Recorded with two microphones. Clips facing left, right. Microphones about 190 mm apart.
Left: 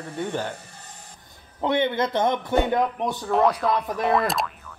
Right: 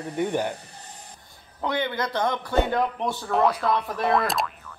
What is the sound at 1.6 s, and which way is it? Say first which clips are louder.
A man's voice: left 4 dB; 25° left (ahead or behind).